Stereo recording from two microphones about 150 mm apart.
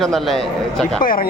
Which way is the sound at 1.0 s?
70° left (ahead or behind).